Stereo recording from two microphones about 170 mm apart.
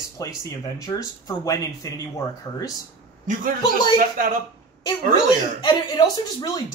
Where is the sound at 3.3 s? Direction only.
50° right (ahead or behind).